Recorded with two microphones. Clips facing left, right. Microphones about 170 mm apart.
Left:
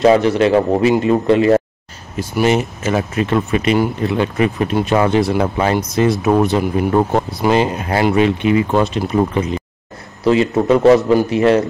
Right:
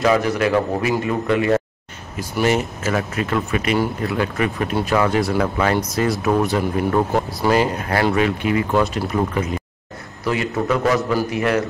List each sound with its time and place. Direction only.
0.0 s speech: 30° left (ahead or behind)